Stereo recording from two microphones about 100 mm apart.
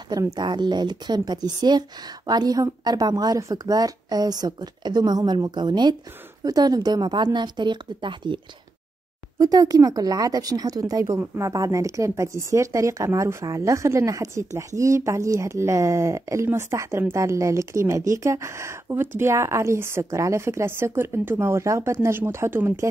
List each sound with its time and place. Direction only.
0.1 s speech: 40° right (ahead or behind)
9.4 s a woman's voice: 35° right (ahead or behind)